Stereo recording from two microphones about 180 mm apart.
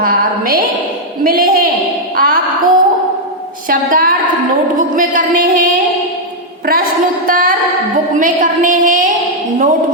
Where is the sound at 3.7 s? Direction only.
50° right (ahead or behind).